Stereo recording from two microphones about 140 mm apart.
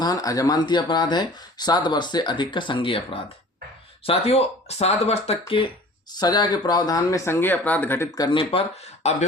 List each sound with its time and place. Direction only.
0.0 s speech: 25° left (ahead or behind); by 9.1 s 50° left (ahead or behind)